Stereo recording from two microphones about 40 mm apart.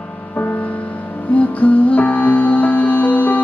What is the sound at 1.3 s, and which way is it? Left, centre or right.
Music, left.